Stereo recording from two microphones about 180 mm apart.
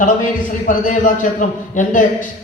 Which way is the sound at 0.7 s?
45° left (ahead or behind).